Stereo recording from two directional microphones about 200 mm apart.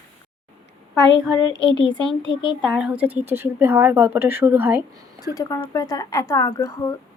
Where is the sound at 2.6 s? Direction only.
Centre (ahead or behind).